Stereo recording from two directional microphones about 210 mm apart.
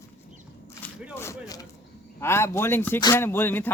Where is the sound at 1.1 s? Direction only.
15° left (ahead or behind).